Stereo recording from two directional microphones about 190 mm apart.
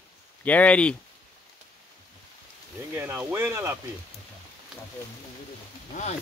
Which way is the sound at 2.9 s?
10° right (ahead or behind).